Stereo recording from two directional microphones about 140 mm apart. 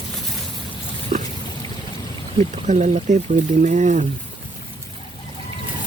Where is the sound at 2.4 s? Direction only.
60° right (ahead or behind).